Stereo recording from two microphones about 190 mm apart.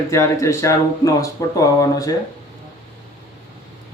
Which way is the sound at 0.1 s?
15° left (ahead or behind).